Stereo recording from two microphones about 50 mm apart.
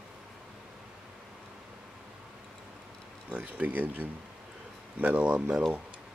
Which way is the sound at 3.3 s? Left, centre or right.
Right.